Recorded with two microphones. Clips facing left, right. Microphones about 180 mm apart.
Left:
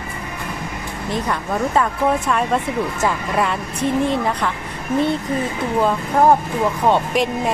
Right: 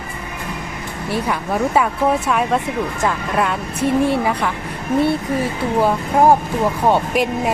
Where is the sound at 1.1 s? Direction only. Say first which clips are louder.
Right 2 dB; 10° right (ahead or behind).